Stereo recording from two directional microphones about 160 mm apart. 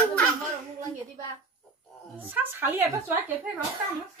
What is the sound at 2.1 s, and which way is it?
A woman's voice, 10° right (ahead or behind).